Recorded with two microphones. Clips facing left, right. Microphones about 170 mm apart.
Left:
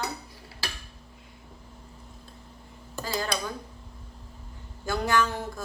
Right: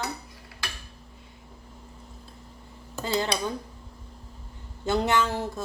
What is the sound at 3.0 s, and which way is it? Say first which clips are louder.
Speech: right 4 dB; 25° right (ahead or behind).